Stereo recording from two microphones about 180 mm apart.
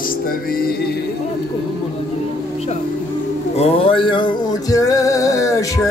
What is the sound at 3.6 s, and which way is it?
Music, 30° left (ahead or behind).